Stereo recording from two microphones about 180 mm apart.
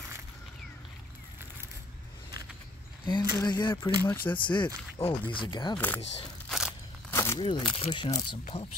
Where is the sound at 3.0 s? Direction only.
25° left (ahead or behind).